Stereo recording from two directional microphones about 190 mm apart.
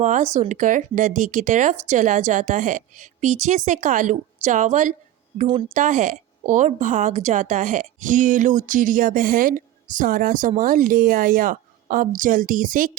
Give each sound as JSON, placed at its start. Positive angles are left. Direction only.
{"t": 0.0, "sound": "a woman's voice", "side_deg": -40}
{"t": 5.5, "sound": "speech", "side_deg": -25}
{"t": 5.7, "sound": "a woman's voice", "side_deg": -40}